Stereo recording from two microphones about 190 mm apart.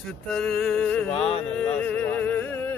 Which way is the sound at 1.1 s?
30° left (ahead or behind).